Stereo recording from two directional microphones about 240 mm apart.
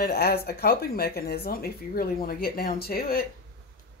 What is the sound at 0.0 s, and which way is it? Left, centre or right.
Speech, left.